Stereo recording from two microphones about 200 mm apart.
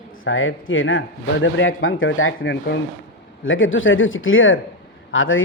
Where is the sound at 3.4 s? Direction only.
75° left (ahead or behind).